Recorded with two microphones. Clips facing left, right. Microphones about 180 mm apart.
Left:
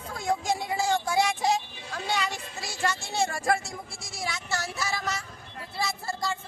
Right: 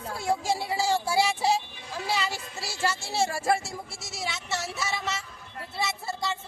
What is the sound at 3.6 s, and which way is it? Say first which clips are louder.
Speech: right 1 dB; 5° right (ahead or behind).